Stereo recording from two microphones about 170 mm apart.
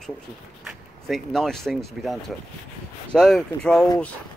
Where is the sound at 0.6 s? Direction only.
Centre (ahead or behind).